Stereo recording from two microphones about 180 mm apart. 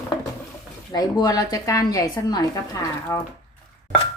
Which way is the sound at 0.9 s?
20° left (ahead or behind).